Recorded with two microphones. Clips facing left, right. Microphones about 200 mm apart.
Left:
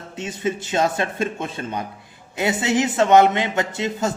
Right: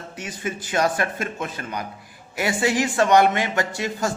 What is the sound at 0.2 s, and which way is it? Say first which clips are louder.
Speech: left 6 dB; 25° left (ahead or behind).